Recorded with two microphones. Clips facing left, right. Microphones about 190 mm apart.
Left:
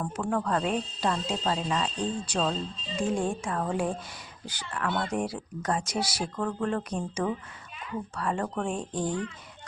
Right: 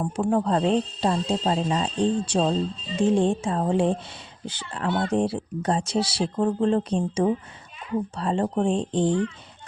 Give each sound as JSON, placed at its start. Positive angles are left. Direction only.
{"t": 0.0, "sound": "speech", "side_deg": -25}